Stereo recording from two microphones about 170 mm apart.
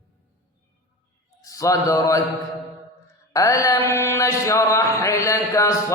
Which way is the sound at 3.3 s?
20° left (ahead or behind).